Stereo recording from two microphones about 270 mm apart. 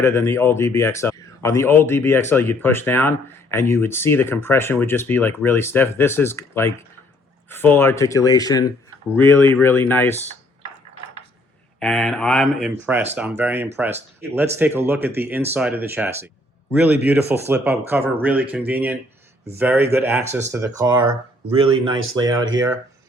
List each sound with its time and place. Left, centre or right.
0.0 s speech: centre
11.8 s speech: centre